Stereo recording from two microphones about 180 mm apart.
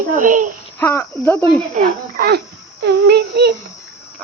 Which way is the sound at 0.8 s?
10° left (ahead or behind).